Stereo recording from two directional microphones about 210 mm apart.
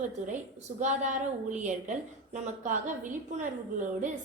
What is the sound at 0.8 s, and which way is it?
A woman's voice, 35° right (ahead or behind).